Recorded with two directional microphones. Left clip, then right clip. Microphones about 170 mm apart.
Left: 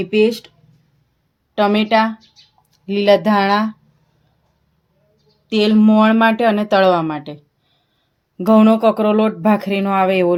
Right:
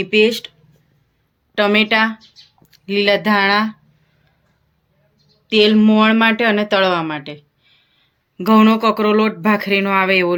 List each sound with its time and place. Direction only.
0.0 s speech: 40° left (ahead or behind)
1.5 s speech: 40° left (ahead or behind)
5.5 s speech: 50° left (ahead or behind)